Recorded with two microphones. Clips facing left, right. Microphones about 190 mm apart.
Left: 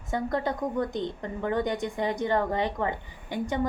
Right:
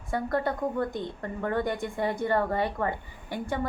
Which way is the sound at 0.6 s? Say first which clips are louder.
Even; 5° right (ahead or behind).